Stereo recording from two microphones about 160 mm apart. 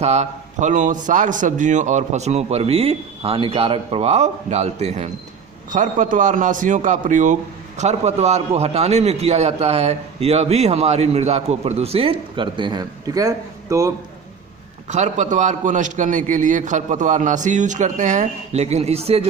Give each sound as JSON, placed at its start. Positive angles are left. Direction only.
{"t": 0.0, "sound": "a man's voice", "side_deg": -45}
{"t": 14.8, "sound": "a man's voice", "side_deg": -50}